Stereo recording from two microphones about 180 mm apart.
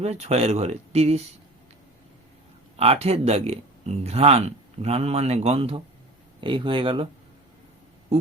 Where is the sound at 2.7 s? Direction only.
35° right (ahead or behind).